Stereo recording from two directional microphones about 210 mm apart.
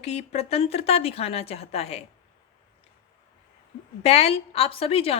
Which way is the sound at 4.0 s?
30° left (ahead or behind).